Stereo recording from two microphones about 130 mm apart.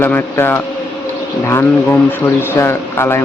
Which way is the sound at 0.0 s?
15° left (ahead or behind).